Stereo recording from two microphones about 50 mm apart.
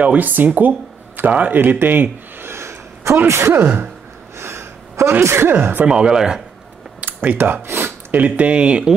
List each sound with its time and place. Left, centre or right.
0.0 s speech: right
2.5 s a sound: right
3.3 s speech: right
3.5 s speech: right
4.4 s a sound: right
5.2 s speech: right
5.6 s speech: right
5.9 s speech: centre
7.2 s speech: right
7.6 s gasp: right
8.1 s speech: right